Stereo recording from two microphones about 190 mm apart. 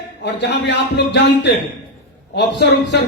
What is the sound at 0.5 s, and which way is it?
A man's voice, 70° left (ahead or behind).